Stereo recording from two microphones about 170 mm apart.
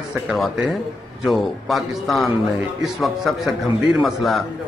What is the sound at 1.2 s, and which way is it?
A man's voice, centre (ahead or behind).